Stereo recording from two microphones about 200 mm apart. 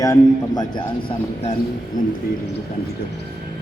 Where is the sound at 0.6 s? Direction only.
20° left (ahead or behind).